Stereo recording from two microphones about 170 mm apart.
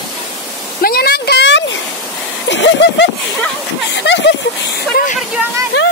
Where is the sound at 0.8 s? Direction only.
65° left (ahead or behind); by 3.1 s 90° left.